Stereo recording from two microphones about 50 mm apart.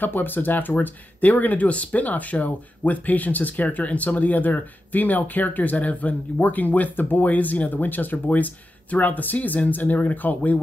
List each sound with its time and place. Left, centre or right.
0.0 s speech: left